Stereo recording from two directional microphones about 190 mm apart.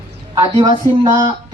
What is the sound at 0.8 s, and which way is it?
Speech, 15° left (ahead or behind).